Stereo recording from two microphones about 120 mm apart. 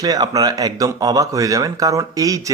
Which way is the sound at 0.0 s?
35° right (ahead or behind).